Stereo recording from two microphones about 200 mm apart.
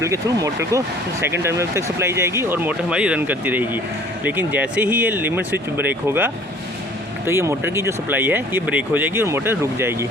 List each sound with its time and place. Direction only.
0.0 s speech: 15° right (ahead or behind)